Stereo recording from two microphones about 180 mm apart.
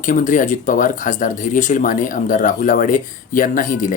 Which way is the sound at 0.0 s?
45° left (ahead or behind).